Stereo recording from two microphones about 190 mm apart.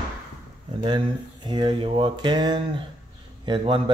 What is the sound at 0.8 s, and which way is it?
Speech, 25° right (ahead or behind).